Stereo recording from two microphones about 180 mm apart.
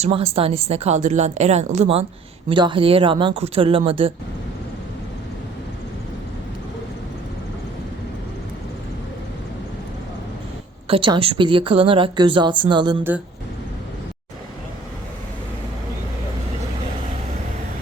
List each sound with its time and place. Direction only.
0.0 s speech: 30° right (ahead or behind)
10.8 s speech: 30° right (ahead or behind)